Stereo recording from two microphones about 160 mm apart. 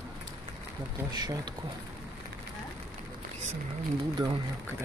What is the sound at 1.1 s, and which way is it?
Speech, 25° right (ahead or behind).